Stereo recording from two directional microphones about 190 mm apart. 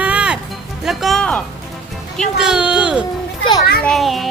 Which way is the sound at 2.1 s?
Centre (ahead or behind).